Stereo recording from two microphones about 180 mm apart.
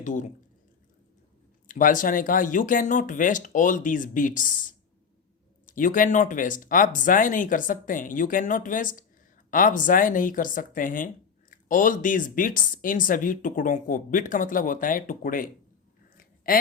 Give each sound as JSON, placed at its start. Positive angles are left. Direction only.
{"t": 0.0, "sound": "speech", "side_deg": 45}
{"t": 1.6, "sound": "speech", "side_deg": 50}
{"t": 5.6, "sound": "speech", "side_deg": 50}
{"t": 16.1, "sound": "a sound", "side_deg": 55}